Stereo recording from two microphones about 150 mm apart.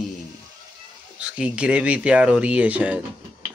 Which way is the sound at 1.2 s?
5° right (ahead or behind).